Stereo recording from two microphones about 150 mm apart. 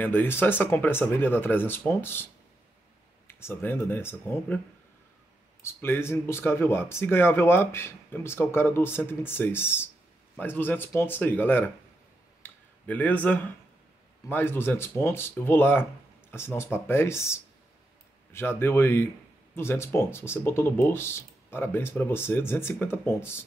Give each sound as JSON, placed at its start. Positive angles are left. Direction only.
{"t": 0.0, "sound": "speech", "side_deg": 15}
{"t": 3.3, "sound": "speech", "side_deg": 15}
{"t": 5.6, "sound": "speech", "side_deg": 15}